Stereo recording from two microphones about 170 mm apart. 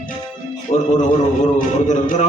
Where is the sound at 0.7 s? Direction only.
45° left (ahead or behind).